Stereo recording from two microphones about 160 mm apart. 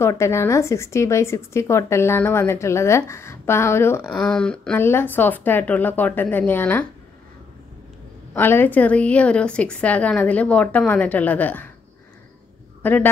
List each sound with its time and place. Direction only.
0.0 s a woman's voice: 15° left (ahead or behind)
4.1 s a woman's voice: 5° left (ahead or behind)
8.3 s a woman's voice: 15° left (ahead or behind)
12.8 s a woman's voice: 10° left (ahead or behind)